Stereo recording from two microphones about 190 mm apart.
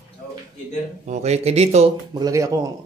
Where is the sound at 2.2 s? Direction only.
15° right (ahead or behind).